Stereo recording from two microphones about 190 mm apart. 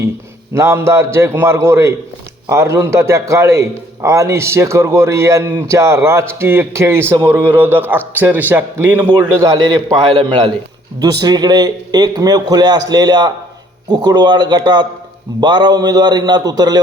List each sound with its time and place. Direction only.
0.5 s a man's voice: 15° right (ahead or behind)
11.0 s a man's voice: 20° right (ahead or behind)